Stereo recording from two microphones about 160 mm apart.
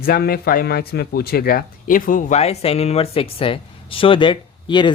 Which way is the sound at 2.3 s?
40° left (ahead or behind).